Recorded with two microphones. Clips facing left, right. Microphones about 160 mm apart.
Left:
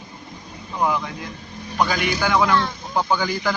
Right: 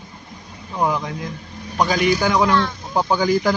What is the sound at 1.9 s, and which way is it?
A man's voice, 40° right (ahead or behind).